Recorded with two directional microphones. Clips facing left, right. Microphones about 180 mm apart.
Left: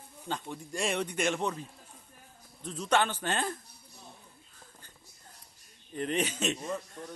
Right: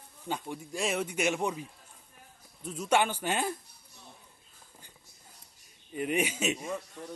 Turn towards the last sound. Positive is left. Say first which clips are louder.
# even
turn(degrees=-10)  # may be behind; listen again after turning